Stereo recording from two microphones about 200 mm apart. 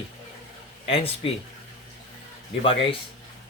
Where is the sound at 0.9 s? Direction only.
30° left (ahead or behind).